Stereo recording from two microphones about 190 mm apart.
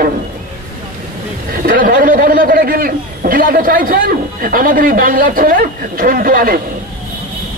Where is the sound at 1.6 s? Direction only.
45° right (ahead or behind).